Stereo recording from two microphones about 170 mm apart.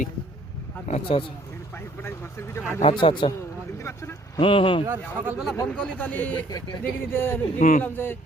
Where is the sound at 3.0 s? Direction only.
30° left (ahead or behind).